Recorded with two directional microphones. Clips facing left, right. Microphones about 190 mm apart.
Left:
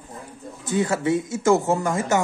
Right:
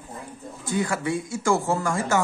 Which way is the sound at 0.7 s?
25° left (ahead or behind).